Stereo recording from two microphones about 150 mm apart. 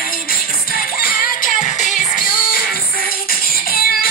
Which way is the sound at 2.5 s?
75° left (ahead or behind).